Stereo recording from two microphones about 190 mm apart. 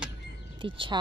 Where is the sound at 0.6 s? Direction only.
25° right (ahead or behind).